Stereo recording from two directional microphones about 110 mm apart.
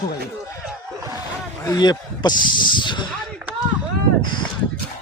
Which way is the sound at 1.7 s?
40° left (ahead or behind).